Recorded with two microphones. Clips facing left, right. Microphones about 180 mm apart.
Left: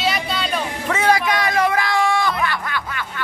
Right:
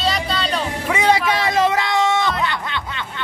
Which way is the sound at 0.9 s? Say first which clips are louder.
Right 1 dB; 20° right (ahead or behind).